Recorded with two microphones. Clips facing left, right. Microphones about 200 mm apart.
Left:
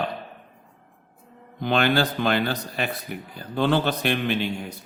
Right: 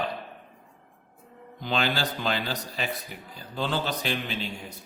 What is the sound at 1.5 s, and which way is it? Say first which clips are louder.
A man's voice: left 6 dB; 55° left (ahead or behind).